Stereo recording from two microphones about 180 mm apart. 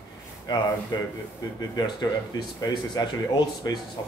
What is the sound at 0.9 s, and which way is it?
Speech, 20° left (ahead or behind).